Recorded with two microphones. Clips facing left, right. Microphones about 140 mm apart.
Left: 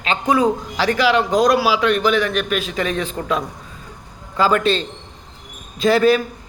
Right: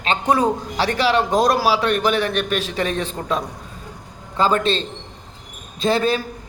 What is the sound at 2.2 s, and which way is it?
A man's voice, 35° right (ahead or behind).